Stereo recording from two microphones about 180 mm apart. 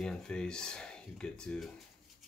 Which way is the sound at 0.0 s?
5° left (ahead or behind).